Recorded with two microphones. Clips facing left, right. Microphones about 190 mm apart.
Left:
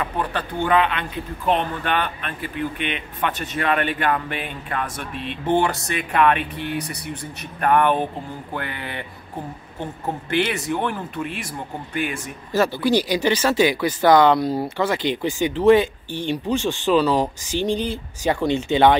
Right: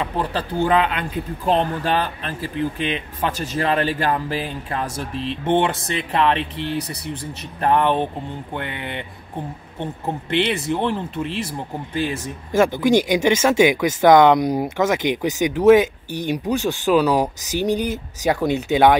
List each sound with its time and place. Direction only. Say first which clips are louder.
0.0 s speech: right 2 dB; 30° right (ahead or behind)
10.3 s speech: right 2 dB; 25° right (ahead or behind); by 18.9 s 10° right (ahead or behind)